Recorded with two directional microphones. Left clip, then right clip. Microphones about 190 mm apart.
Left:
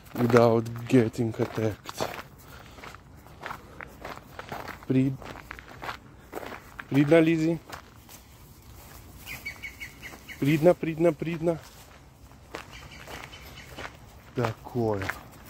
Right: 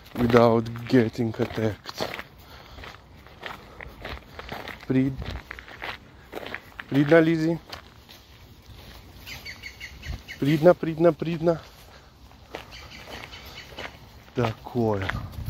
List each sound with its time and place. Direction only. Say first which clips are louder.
0.1 s a sound: right 2 dB; centre (ahead or behind)
0.4 s speech: right 2 dB; 15° left (ahead or behind)
3.3 s walk: even; centre (ahead or behind)
10.4 s speech: right 3 dB; centre (ahead or behind); by 11.6 s 15° right (ahead or behind)
12.5 s a sound: right 1 dB; 10° right (ahead or behind)
13.7 s walk: right 1 dB; 20° right (ahead or behind)